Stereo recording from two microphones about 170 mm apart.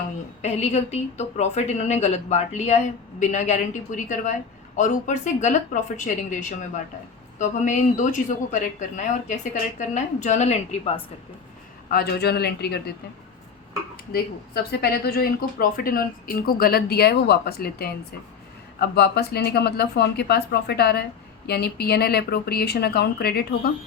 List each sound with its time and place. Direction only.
0.4 s a woman's voice: 40° left (ahead or behind)
11.9 s a woman's voice: 70° left (ahead or behind)
13.9 s a woman's voice: 65° left (ahead or behind)